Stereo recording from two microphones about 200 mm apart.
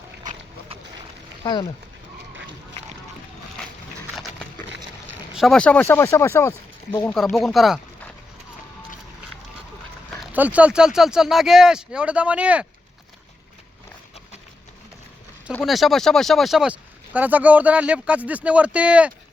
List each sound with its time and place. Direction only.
1.4 s speech: 25° left (ahead or behind)
4.1 s a sound: centre (ahead or behind)
5.3 s speech: centre (ahead or behind)
10.1 s speech: 5° right (ahead or behind)
15.5 s speech: centre (ahead or behind)